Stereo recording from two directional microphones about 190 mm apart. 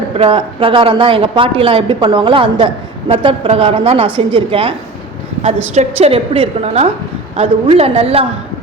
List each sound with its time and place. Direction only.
0.1 s speech: 30° right (ahead or behind)
5.7 s a woman's voice: 35° right (ahead or behind)